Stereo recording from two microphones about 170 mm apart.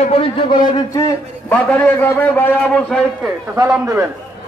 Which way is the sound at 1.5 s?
10° left (ahead or behind).